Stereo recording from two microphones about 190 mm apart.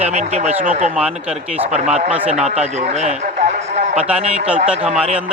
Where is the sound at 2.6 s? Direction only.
35° right (ahead or behind).